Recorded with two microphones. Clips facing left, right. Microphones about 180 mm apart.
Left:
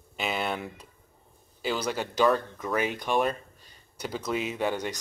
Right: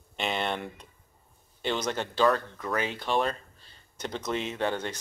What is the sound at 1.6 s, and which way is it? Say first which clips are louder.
Speech: even; 5° left (ahead or behind).